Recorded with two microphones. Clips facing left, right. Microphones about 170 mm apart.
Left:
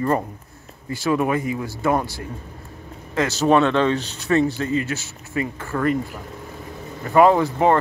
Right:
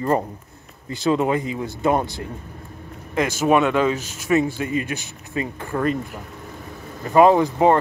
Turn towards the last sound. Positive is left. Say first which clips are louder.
# right 1 dB
turn(degrees=-20)  # may be behind; listen again after turning